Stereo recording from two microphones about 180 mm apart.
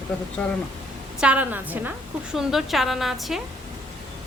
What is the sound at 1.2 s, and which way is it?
A woman's voice, 5° right (ahead or behind).